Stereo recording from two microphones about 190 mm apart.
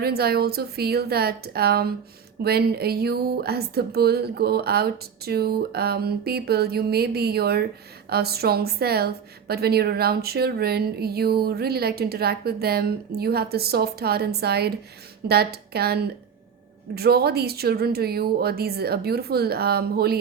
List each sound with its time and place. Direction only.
0.0 s speech: 55° right (ahead or behind)